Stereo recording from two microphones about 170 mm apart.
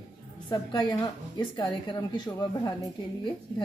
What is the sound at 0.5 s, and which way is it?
Speech, 25° left (ahead or behind).